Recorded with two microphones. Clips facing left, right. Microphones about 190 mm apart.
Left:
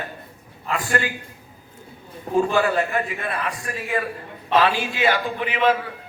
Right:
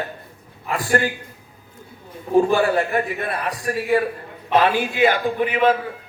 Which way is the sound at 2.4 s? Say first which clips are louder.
Right 2 dB; 30° right (ahead or behind).